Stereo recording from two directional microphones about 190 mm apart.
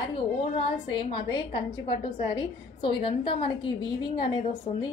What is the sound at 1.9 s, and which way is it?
A woman's voice, 25° left (ahead or behind).